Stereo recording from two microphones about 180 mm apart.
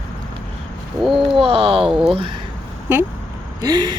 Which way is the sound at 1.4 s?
30° right (ahead or behind).